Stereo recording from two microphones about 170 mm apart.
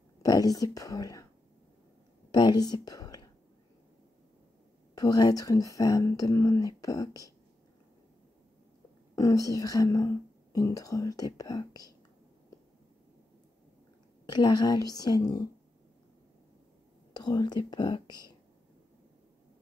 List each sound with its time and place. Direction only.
0.2 s speech: 20° left (ahead or behind)
2.3 s speech: 25° left (ahead or behind)
4.9 s speech: 25° left (ahead or behind)
9.1 s speech: 20° left (ahead or behind)
14.2 s speech: 25° left (ahead or behind)
17.1 s speech: 25° left (ahead or behind)